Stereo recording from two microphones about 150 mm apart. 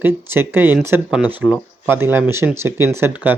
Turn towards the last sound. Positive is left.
turn(degrees=-10)  # may be behind; listen again after turning